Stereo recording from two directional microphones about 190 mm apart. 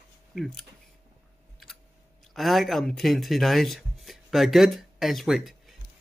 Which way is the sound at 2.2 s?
Centre (ahead or behind).